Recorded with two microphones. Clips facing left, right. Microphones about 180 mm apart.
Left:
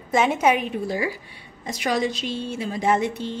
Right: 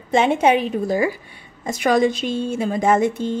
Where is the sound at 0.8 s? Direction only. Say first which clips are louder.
Right 6 dB; 45° right (ahead or behind).